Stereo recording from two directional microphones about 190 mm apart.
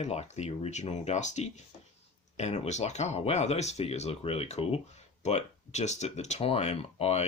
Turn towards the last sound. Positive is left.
turn(degrees=30)  # may be behind; listen again after turning